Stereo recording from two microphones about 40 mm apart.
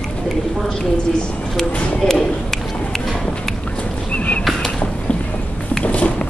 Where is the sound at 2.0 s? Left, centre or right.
Centre.